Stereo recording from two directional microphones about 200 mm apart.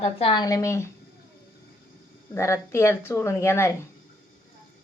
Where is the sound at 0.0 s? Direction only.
25° left (ahead or behind).